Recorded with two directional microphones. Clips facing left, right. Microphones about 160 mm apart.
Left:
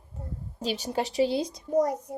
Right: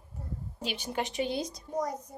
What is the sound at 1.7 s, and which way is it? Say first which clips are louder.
Speech: left 9 dB; 65° left (ahead or behind).